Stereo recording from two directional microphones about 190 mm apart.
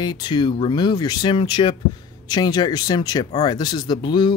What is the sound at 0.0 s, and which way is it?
Speech, 20° left (ahead or behind).